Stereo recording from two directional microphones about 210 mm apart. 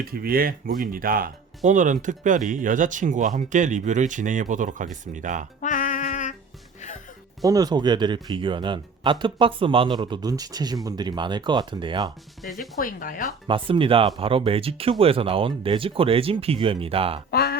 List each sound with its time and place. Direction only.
0.0 s speech: 45° right (ahead or behind)
5.5 s music: 40° left (ahead or behind)
7.4 s speech: 15° right (ahead or behind)
12.5 s speech: 40° left (ahead or behind)
13.5 s speech: 25° right (ahead or behind)
17.3 s a sound: 45° left (ahead or behind)